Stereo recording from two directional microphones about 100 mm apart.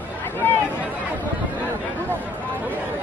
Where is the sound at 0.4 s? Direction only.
20° left (ahead or behind).